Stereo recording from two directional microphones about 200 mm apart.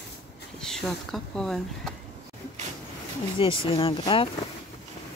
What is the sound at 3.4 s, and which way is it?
Speech, 25° left (ahead or behind).